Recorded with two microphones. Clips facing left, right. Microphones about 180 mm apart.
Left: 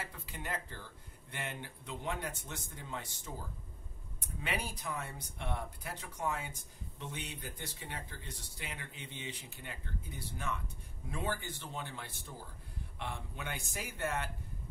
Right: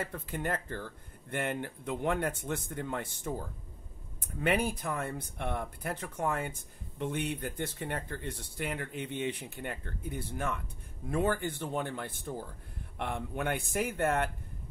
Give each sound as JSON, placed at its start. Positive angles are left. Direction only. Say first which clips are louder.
{"t": 0.0, "sound": "speech", "louder": "right 9 dB", "side_deg": -55}